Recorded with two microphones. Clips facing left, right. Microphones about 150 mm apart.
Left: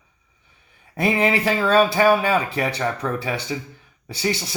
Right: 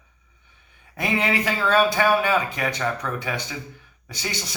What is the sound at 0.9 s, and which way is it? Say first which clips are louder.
Speech: left 4 dB; 30° left (ahead or behind).